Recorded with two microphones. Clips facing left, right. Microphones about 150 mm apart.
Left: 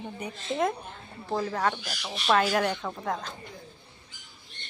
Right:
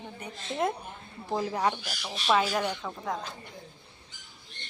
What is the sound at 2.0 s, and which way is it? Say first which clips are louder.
Speech: left 2 dB; centre (ahead or behind).